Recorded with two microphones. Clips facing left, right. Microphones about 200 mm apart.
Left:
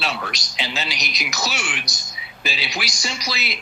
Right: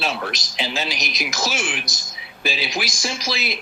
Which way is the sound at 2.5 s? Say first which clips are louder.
Right 3 dB; 50° right (ahead or behind).